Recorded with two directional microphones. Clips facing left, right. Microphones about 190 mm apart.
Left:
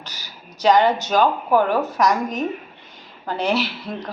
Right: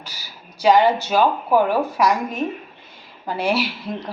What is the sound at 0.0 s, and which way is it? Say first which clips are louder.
Speech: left 1 dB; 10° right (ahead or behind).